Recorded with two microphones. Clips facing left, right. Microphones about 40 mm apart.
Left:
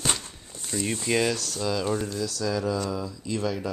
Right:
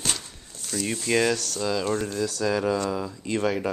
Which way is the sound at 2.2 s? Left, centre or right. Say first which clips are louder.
Right 3 dB; right.